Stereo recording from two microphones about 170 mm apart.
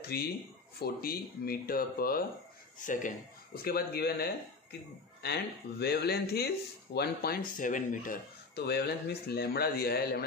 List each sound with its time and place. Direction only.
0.1 s speech: 65° left (ahead or behind); by 3.1 s 50° left (ahead or behind)
3.6 s speech: 65° left (ahead or behind)
7.5 s speech: 50° left (ahead or behind); by 10.2 s 65° left (ahead or behind)